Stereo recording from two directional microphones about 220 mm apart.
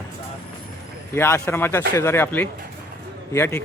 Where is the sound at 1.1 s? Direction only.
10° left (ahead or behind).